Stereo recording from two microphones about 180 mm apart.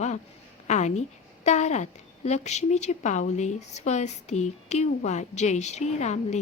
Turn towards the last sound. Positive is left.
turn(degrees=40)  # may be behind; listen again after turning